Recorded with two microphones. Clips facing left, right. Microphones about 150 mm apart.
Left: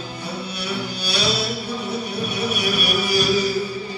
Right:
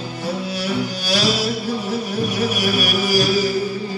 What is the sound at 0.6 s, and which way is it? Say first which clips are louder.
Music: right 5 dB; 90° right.